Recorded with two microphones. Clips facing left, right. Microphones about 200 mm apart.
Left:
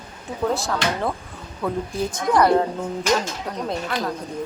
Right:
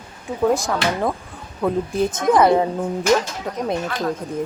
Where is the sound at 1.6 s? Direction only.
20° right (ahead or behind).